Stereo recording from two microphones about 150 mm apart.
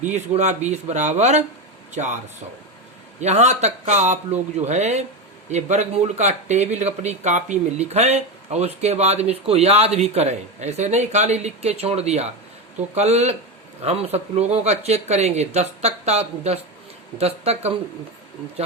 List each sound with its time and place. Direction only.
0.1 s speech: 50° right (ahead or behind)
3.2 s speech: 50° right (ahead or behind)